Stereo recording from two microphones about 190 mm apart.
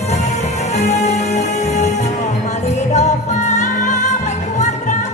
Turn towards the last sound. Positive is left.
turn(degrees=40)  # may be behind; listen again after turning